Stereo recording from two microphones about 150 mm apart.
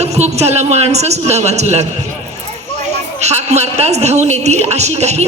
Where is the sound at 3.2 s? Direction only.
45° right (ahead or behind).